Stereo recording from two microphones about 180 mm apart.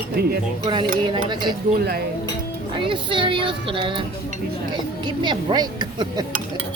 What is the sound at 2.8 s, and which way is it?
Speech, 30° right (ahead or behind).